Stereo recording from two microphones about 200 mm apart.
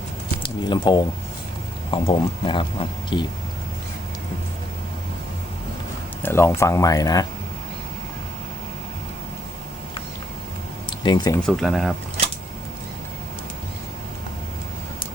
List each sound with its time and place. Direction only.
0.4 s speech: 20° left (ahead or behind)
6.2 s speech: 10° left (ahead or behind)
10.8 s a sound: 20° left (ahead or behind)
11.4 s speech: centre (ahead or behind)